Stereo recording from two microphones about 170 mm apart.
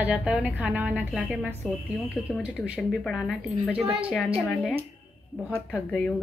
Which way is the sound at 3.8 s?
35° right (ahead or behind).